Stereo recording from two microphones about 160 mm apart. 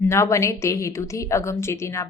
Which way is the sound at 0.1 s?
15° left (ahead or behind).